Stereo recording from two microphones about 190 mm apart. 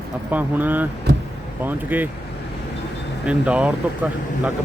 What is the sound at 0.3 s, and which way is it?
Speech, 10° right (ahead or behind).